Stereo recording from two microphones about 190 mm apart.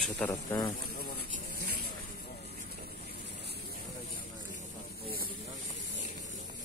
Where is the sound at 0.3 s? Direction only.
20° left (ahead or behind).